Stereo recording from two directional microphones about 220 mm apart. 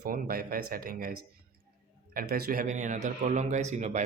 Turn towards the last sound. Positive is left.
turn(degrees=-30)  # may be behind; listen again after turning